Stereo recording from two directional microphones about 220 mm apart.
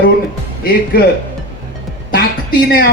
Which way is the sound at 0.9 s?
40° left (ahead or behind).